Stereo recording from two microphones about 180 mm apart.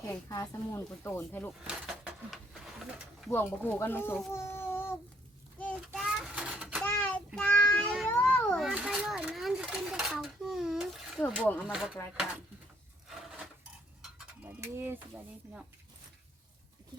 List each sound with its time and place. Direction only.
0.0 s speech: 15° left (ahead or behind)
1.6 s a sound: centre (ahead or behind)
3.2 s speech: 10° left (ahead or behind)
4.3 s a sound: 15° left (ahead or behind)
5.5 s child singing: 5° left (ahead or behind)
6.8 s child singing: 10° left (ahead or behind)
7.3 s a sound: 5° left (ahead or behind)
11.6 s speech: 5° right (ahead or behind)
14.6 s speech: 10° right (ahead or behind)